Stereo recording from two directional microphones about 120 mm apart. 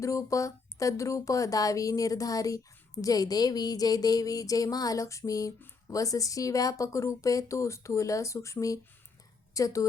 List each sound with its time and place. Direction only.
0.0 s speech: 25° left (ahead or behind)